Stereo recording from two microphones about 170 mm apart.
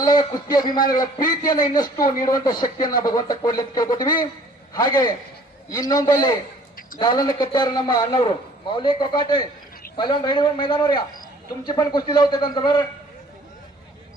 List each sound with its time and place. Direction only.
0.0 s speech: 25° left (ahead or behind)